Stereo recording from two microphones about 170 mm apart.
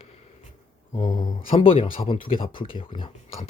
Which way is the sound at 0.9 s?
25° left (ahead or behind).